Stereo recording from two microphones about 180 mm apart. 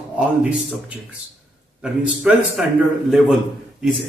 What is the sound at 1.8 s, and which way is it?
A man's voice, 5° right (ahead or behind).